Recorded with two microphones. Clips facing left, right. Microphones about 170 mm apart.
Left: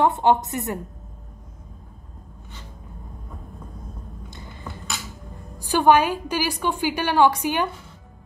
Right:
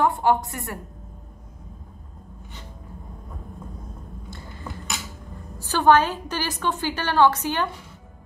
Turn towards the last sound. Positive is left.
turn(degrees=15)  # may be behind; listen again after turning